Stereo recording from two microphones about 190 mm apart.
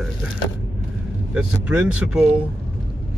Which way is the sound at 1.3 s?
5° right (ahead or behind).